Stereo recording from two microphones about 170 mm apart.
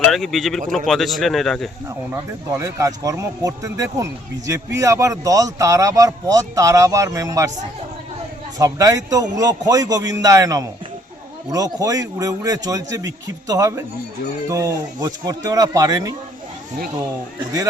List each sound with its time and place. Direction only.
0.1 s speech: centre (ahead or behind)
2.0 s speech: 15° right (ahead or behind)
8.5 s speech: 20° right (ahead or behind)